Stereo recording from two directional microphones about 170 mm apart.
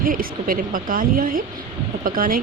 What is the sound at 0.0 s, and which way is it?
Speech, 55° right (ahead or behind).